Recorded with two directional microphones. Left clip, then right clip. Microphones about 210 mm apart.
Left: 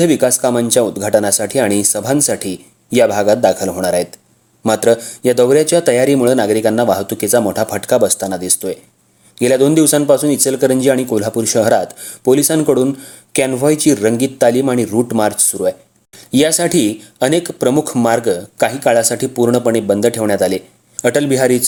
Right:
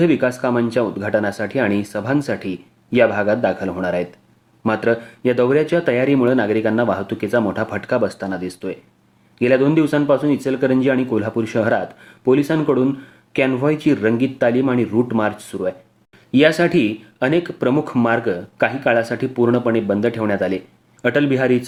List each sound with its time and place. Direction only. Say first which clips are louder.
0.0 s speech: left 5 dB; 35° left (ahead or behind)
8.2 s speech: left 6 dB; 45° left (ahead or behind)